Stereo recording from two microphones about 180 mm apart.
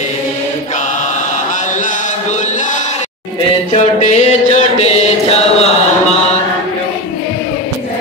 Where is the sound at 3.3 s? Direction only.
40° left (ahead or behind).